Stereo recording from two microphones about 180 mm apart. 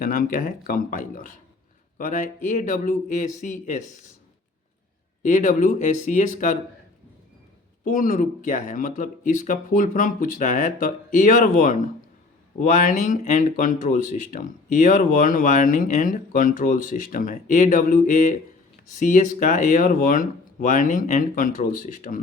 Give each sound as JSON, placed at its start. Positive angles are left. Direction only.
{"t": 0.0, "sound": "speech", "side_deg": 50}
{"t": 5.2, "sound": "speech", "side_deg": 45}
{"t": 7.9, "sound": "speech", "side_deg": 45}